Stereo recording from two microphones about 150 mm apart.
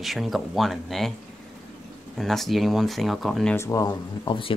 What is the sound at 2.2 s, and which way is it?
Speech, centre (ahead or behind).